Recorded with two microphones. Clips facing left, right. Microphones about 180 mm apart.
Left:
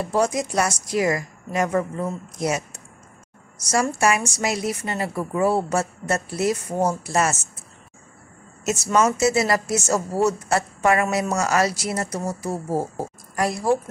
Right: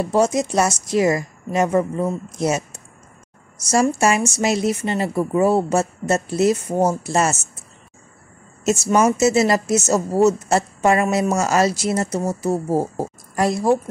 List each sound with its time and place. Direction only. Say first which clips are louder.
0.1 s speech: right 3 dB; 25° right (ahead or behind)
8.6 s speech: right 3 dB; 30° right (ahead or behind)